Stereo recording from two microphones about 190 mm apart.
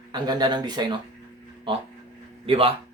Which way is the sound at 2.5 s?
30° right (ahead or behind).